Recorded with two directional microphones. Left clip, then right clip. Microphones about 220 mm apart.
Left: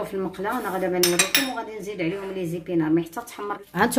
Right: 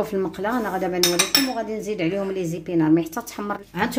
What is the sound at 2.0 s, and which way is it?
A woman's voice, 50° right (ahead or behind).